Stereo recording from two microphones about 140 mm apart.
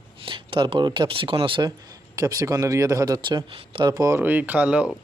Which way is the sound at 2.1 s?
25° right (ahead or behind).